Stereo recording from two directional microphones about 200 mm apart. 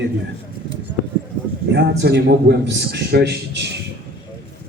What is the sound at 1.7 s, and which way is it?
A man's voice, 55° right (ahead or behind).